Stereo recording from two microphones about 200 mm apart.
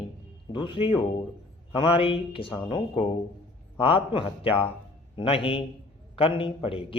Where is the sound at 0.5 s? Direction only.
25° left (ahead or behind).